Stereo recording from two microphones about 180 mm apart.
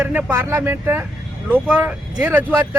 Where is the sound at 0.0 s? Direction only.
10° right (ahead or behind).